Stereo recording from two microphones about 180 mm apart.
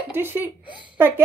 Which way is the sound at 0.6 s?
25° left (ahead or behind).